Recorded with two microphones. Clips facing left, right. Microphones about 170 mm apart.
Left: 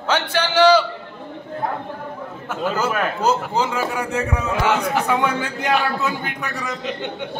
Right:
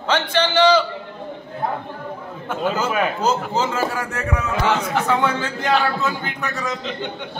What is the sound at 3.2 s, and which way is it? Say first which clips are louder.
A man's voice: left 1 dB; 10° left (ahead or behind).